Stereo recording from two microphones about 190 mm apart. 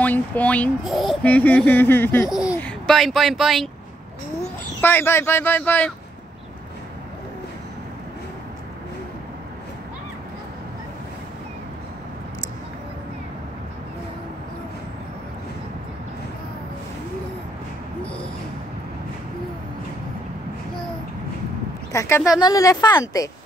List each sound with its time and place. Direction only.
0.0 s speech: 10° left (ahead or behind)
4.8 s speech: 10° left (ahead or behind)
21.9 s a woman's voice: 15° left (ahead or behind)